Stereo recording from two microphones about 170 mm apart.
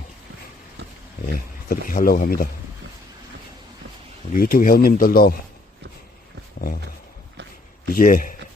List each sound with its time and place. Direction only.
1.3 s speech: 55° left (ahead or behind)
4.4 s speech: 60° left (ahead or behind)
7.9 s a man's voice: 55° left (ahead or behind)